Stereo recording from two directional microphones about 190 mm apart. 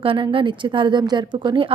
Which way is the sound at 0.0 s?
30° right (ahead or behind).